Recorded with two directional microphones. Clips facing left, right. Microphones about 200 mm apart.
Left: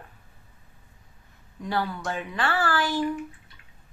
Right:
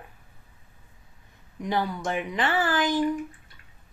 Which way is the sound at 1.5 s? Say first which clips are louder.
Right 1 dB; 15° right (ahead or behind).